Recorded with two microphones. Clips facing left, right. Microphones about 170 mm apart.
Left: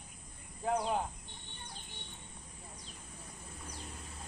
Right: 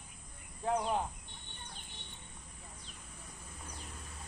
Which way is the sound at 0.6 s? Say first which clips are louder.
Even; centre (ahead or behind).